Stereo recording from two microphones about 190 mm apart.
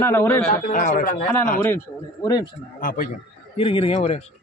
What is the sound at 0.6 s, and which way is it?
Speech, 45° left (ahead or behind).